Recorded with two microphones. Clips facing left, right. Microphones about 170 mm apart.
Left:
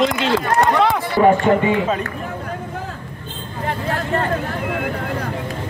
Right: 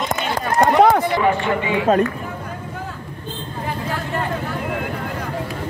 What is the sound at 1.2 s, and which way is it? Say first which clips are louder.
Speech: left 5 dB; 45° left (ahead or behind).